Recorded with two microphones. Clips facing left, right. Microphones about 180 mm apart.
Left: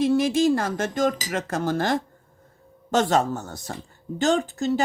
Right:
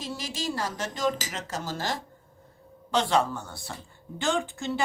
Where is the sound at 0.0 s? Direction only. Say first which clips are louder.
Left 15 dB; 55° left (ahead or behind).